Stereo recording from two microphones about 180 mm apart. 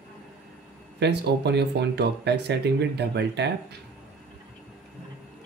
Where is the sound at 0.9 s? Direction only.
70° right (ahead or behind).